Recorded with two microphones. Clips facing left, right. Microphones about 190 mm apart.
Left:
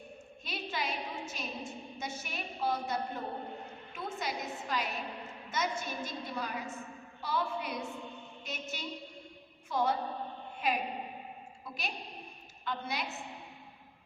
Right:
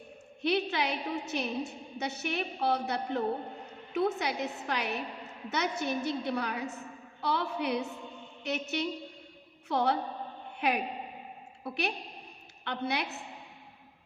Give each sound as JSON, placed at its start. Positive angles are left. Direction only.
{"t": 0.4, "sound": "a woman's voice", "side_deg": -70}